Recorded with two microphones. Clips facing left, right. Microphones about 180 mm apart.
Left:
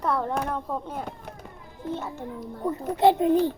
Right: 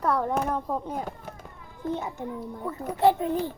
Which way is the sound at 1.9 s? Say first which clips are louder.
Even; 15° right (ahead or behind).